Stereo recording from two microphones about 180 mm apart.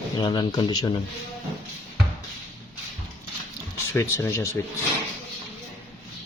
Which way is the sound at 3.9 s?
15° left (ahead or behind).